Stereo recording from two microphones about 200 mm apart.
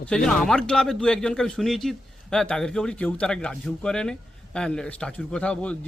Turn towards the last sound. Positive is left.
turn(degrees=5)  # may be behind; listen again after turning